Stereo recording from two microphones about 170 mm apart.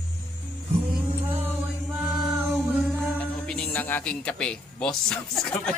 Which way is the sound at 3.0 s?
5° left (ahead or behind).